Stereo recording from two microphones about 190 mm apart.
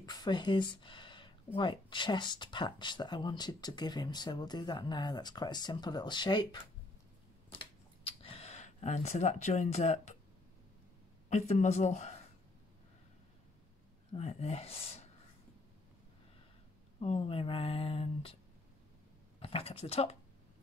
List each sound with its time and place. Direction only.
0.0 s speech: 20° left (ahead or behind)
7.5 s a sound: 30° left (ahead or behind)
11.2 s speech: 40° left (ahead or behind)
14.1 s speech: 35° left (ahead or behind)
17.0 s speech: 30° left (ahead or behind)
19.4 s speech: 30° left (ahead or behind)